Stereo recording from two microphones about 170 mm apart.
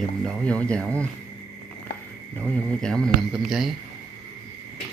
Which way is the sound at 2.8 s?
5° left (ahead or behind).